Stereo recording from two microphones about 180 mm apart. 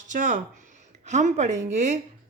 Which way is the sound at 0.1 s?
45° right (ahead or behind).